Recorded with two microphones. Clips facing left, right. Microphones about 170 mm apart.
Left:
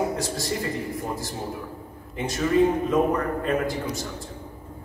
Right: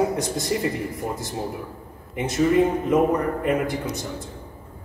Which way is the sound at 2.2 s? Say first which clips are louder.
Right 2 dB; 20° right (ahead or behind).